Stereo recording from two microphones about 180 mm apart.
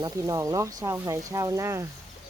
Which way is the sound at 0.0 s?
20° right (ahead or behind).